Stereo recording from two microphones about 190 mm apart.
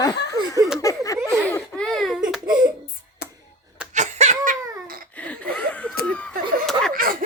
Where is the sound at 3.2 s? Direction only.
60° left (ahead or behind).